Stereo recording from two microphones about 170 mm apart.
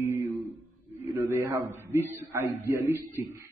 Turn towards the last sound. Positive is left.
turn(degrees=-20)  # may be behind; listen again after turning